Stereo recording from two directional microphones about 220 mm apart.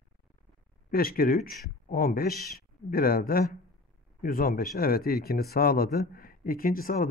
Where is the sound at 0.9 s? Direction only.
40° left (ahead or behind).